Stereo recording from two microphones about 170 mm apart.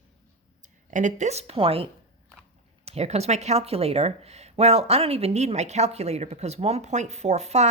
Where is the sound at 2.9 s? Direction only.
40° right (ahead or behind).